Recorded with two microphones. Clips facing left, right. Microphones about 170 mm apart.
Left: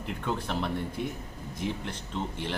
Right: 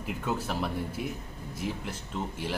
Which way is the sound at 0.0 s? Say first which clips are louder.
Right 1 dB; 5° right (ahead or behind).